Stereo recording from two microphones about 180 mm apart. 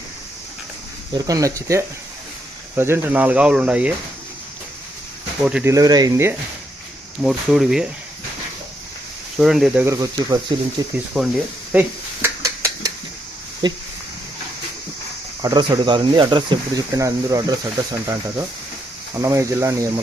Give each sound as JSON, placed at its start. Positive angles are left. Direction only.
{"t": 1.1, "sound": "speech", "side_deg": -20}
{"t": 5.4, "sound": "speech", "side_deg": -5}
{"t": 5.7, "sound": "speech", "side_deg": -20}
{"t": 7.2, "sound": "speech", "side_deg": 0}
{"t": 9.4, "sound": "speech", "side_deg": -5}
{"t": 9.8, "sound": "speech", "side_deg": -20}
{"t": 11.1, "sound": "speech", "side_deg": 0}
{"t": 11.7, "sound": "a sound", "side_deg": -10}
{"t": 13.6, "sound": "speech", "side_deg": -25}
{"t": 15.4, "sound": "speech", "side_deg": -20}
{"t": 19.2, "sound": "speech", "side_deg": -15}